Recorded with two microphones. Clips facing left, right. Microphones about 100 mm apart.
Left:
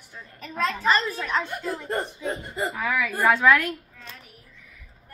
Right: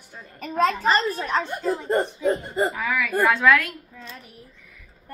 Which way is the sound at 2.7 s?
5° left (ahead or behind).